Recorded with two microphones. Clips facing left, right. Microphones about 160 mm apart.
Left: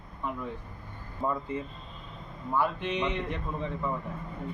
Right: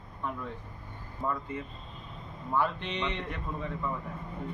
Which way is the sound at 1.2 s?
25° left (ahead or behind).